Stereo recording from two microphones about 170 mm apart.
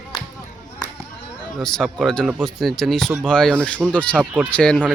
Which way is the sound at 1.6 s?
5° left (ahead or behind).